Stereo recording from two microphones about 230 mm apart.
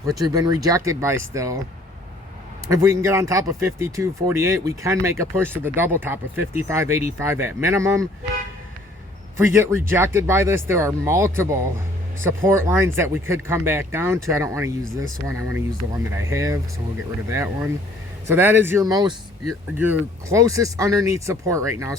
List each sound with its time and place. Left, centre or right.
0.1 s speech: centre
2.6 s speech: centre
9.4 s speech: centre